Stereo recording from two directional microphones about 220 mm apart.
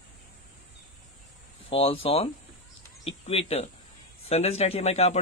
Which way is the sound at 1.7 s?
25° left (ahead or behind).